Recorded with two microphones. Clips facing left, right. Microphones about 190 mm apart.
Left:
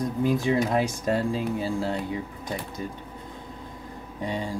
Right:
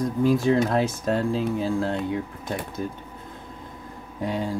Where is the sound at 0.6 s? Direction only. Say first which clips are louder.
Right 2 dB; 15° left (ahead or behind).